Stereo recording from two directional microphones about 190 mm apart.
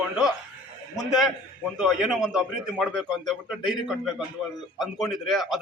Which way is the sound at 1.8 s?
Centre (ahead or behind).